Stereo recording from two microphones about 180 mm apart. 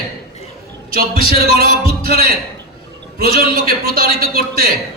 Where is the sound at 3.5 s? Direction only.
55° right (ahead or behind).